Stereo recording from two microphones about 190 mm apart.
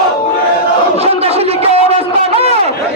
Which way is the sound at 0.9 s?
30° right (ahead or behind).